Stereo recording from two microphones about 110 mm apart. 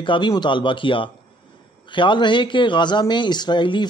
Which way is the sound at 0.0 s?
50° left (ahead or behind).